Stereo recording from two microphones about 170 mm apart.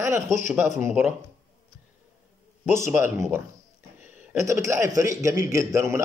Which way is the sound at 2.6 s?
15° right (ahead or behind).